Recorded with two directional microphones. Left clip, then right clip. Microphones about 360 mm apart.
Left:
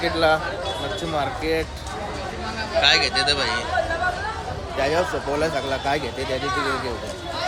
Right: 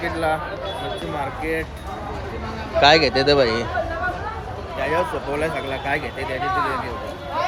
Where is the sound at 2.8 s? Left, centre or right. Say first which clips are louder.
Right 4 dB; centre.